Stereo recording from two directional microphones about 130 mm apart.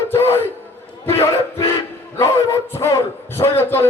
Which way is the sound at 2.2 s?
25° left (ahead or behind).